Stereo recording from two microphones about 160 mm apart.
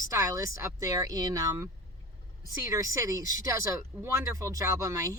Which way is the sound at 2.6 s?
20° right (ahead or behind).